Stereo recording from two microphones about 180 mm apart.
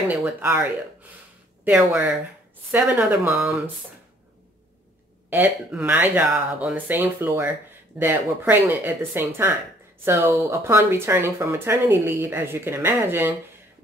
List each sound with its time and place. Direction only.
0.1 s speech: 10° right (ahead or behind)
5.3 s speech: 10° right (ahead or behind)